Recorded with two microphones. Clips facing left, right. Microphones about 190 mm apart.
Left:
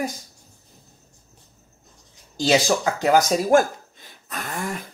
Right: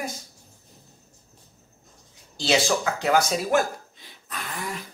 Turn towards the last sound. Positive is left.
turn(degrees=45)  # may be behind; listen again after turning